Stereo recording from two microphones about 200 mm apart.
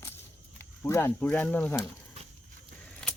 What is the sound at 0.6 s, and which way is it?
Speech, 10° left (ahead or behind).